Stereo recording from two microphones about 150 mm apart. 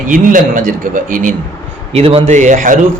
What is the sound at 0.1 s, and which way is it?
Speech, 60° right (ahead or behind).